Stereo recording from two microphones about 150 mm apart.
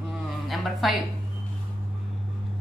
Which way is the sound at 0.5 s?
Centre (ahead or behind).